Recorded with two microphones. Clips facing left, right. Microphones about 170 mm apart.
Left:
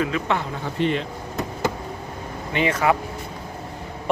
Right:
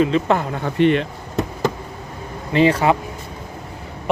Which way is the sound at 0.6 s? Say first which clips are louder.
Right 7 dB; 65° right (ahead or behind).